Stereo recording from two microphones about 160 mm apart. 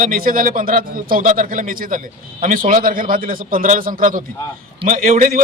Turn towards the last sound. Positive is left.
turn(degrees=-60)  # may be behind; listen again after turning